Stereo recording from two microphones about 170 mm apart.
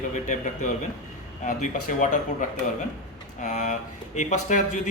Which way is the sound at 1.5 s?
50° left (ahead or behind).